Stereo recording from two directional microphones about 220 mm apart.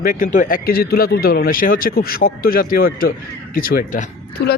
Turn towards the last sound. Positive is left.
turn(degrees=40)  # may be behind; listen again after turning